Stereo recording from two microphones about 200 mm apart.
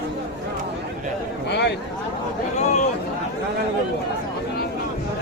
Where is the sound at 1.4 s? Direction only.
55° left (ahead or behind).